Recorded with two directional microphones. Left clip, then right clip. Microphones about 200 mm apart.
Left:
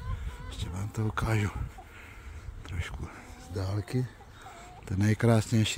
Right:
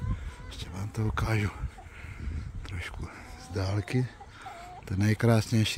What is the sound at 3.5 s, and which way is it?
Speech, 20° right (ahead or behind).